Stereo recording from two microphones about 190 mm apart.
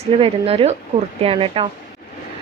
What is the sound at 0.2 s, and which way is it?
Speech, 30° right (ahead or behind).